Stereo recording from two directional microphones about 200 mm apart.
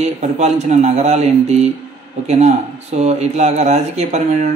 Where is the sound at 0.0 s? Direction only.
35° right (ahead or behind).